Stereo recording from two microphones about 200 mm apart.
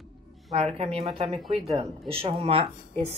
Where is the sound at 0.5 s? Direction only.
30° right (ahead or behind).